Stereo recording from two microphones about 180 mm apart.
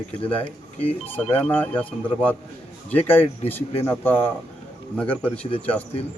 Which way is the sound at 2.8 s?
10° left (ahead or behind).